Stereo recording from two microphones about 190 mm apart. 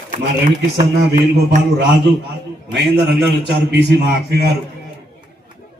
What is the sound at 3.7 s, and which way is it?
Speech, 60° right (ahead or behind).